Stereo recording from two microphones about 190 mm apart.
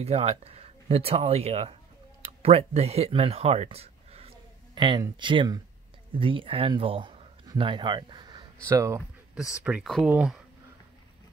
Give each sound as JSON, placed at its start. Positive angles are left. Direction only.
{"t": 0.0, "sound": "speech", "side_deg": -35}